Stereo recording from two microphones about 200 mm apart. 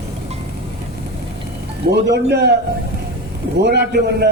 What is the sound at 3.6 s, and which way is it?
Speech, 55° right (ahead or behind).